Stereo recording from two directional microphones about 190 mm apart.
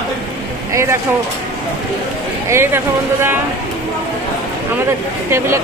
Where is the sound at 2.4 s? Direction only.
15° right (ahead or behind).